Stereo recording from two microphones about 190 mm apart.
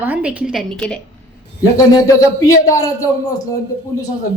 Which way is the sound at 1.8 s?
20° left (ahead or behind).